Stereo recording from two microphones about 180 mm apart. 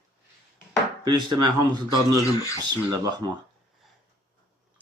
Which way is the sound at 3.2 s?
25° right (ahead or behind).